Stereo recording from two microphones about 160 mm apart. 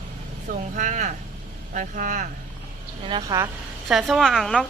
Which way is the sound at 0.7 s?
50° right (ahead or behind).